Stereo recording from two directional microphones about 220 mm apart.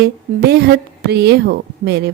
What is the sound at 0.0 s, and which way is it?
A woman's voice, 50° right (ahead or behind).